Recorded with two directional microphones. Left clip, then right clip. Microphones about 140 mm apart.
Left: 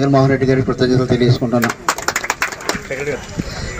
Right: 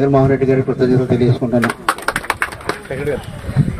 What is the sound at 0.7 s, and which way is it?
Speech, 40° left (ahead or behind).